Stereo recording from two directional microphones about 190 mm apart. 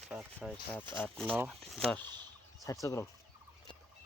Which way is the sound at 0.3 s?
5° left (ahead or behind).